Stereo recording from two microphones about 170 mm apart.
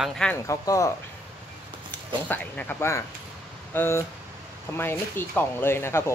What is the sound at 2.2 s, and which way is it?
Speech, 10° left (ahead or behind).